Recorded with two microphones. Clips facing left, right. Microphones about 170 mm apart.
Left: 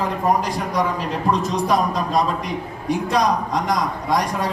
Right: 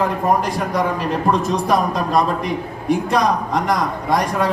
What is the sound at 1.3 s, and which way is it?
A man's voice, 55° right (ahead or behind).